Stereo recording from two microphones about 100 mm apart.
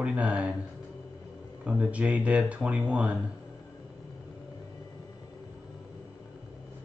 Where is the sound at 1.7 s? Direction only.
15° right (ahead or behind).